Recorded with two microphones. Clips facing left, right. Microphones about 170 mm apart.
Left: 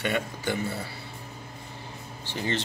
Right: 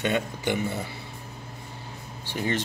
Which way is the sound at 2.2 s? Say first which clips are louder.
Right 2 dB; 15° right (ahead or behind).